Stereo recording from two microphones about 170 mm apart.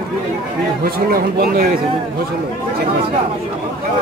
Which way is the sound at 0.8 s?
60° right (ahead or behind).